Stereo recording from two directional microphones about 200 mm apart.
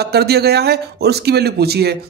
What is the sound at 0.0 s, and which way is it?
A man's voice, 55° right (ahead or behind).